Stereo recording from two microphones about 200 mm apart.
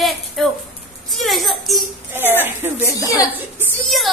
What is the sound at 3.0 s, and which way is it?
Speech, 15° left (ahead or behind).